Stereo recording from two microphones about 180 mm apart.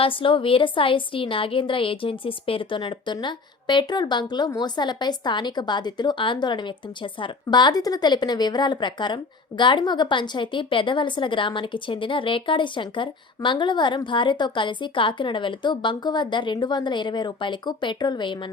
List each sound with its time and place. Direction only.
0.0 s a woman's voice: 30° left (ahead or behind)